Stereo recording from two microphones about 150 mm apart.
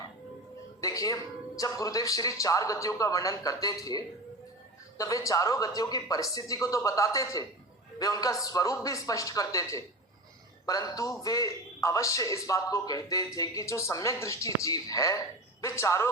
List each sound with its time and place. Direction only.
0.8 s a man's voice: 20° left (ahead or behind)